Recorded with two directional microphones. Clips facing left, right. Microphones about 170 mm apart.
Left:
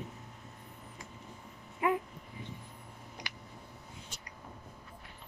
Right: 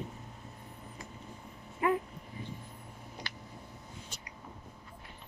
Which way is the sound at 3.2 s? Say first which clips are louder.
Right 1 dB; 15° left (ahead or behind).